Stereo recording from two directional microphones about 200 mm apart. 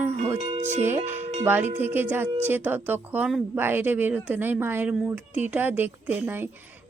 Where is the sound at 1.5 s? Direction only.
10° right (ahead or behind).